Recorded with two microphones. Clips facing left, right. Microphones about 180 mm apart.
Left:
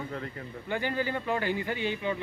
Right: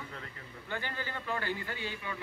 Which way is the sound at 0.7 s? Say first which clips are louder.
Left 9 dB; 15° left (ahead or behind).